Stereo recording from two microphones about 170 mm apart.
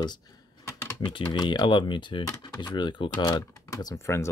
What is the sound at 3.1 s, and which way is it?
Speech, 15° left (ahead or behind).